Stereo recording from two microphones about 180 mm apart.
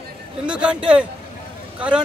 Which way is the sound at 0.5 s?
5° right (ahead or behind).